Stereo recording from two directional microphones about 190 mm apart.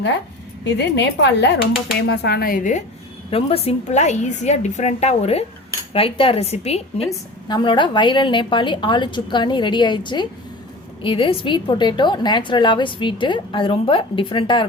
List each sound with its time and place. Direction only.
0.6 s a woman's voice: 65° left (ahead or behind); by 2.8 s 45° left (ahead or behind)
3.2 s a woman's voice: 30° left (ahead or behind)